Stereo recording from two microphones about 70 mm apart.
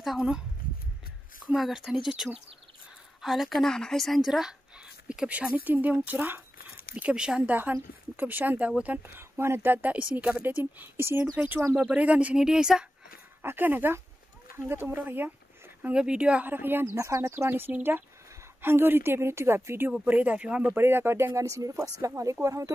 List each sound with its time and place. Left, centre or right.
0.0 s speech: centre
1.5 s a woman's voice: centre; by 6.4 s right
7.0 s speech: centre
7.5 s speech: right
11.4 s speech: right
12.4 s speech: centre
13.4 s speech: right
15.9 s speech: centre
16.4 s speech: right
16.9 s speech: right
20.1 s speech: right
20.7 s speech: right
21.5 s speech: right